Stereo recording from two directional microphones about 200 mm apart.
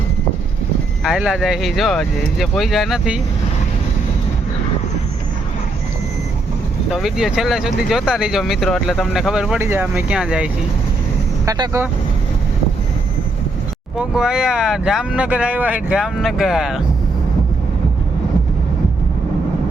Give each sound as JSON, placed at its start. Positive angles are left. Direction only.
{"t": 1.0, "sound": "speech", "side_deg": 0}
{"t": 6.9, "sound": "speech", "side_deg": 0}
{"t": 11.4, "sound": "speech", "side_deg": -20}
{"t": 13.9, "sound": "speech", "side_deg": -5}